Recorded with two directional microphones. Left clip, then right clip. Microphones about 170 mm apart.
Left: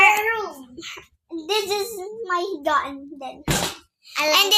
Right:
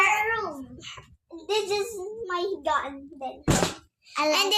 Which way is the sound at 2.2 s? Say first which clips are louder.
Left 4 dB; 40° left (ahead or behind).